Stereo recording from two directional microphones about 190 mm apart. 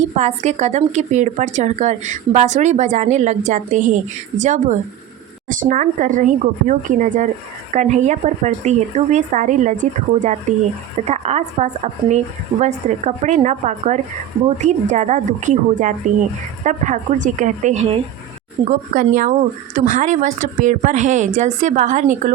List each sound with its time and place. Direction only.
0.2 s a woman's voice: 35° right (ahead or behind)